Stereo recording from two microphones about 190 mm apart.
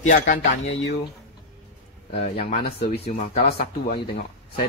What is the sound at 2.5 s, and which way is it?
Speech, 35° left (ahead or behind).